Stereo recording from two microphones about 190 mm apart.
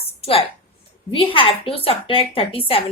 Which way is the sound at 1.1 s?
30° left (ahead or behind).